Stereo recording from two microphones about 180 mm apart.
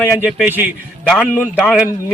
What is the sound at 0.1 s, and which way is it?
A man's voice, 5° right (ahead or behind).